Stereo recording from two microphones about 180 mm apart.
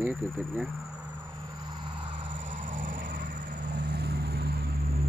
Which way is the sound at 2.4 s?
45° right (ahead or behind).